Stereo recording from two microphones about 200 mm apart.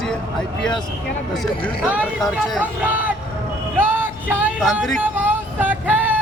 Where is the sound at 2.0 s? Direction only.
Centre (ahead or behind).